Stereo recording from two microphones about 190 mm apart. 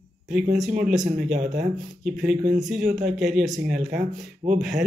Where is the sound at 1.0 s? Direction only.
40° right (ahead or behind).